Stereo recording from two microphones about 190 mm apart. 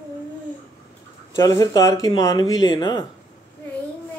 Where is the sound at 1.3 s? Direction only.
20° left (ahead or behind).